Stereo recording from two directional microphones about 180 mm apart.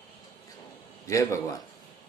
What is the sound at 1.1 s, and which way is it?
Speech, 15° left (ahead or behind).